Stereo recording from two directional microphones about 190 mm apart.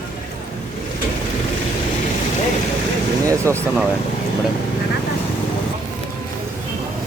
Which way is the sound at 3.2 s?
15° right (ahead or behind).